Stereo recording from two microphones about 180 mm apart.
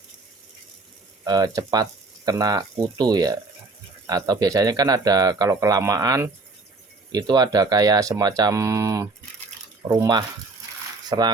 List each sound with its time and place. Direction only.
1.2 s speech: 20° right (ahead or behind)